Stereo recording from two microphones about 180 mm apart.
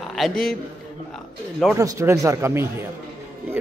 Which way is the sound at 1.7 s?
15° right (ahead or behind).